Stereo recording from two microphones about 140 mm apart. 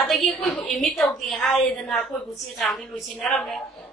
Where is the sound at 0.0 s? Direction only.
Centre (ahead or behind).